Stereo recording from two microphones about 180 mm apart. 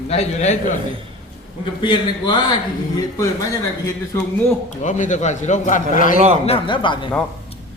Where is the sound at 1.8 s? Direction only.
25° left (ahead or behind).